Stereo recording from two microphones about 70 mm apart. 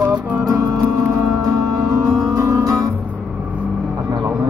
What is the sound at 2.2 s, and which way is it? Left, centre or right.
Music, right.